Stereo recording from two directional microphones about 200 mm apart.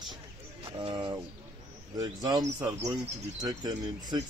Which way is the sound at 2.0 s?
20° right (ahead or behind).